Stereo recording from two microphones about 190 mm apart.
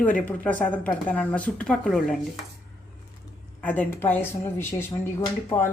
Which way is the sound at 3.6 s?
10° left (ahead or behind).